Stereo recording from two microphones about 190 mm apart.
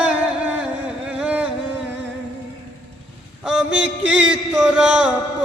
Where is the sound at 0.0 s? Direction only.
5° right (ahead or behind).